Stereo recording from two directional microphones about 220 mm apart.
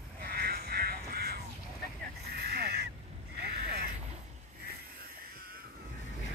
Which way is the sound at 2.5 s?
45° right (ahead or behind).